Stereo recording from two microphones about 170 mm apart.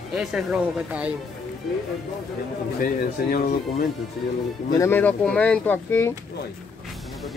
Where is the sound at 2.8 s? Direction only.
55° left (ahead or behind).